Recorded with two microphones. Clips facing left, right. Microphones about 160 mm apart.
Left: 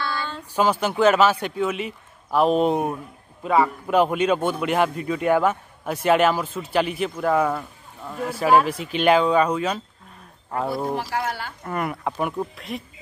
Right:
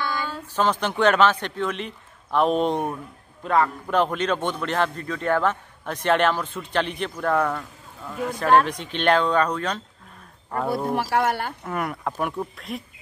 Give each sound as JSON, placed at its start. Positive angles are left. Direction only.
{"t": 0.0, "sound": "a sound", "side_deg": -15}
{"t": 0.6, "sound": "a man's voice", "side_deg": 10}
{"t": 11.0, "sound": "speech", "side_deg": -60}
{"t": 11.6, "sound": "speech", "side_deg": 0}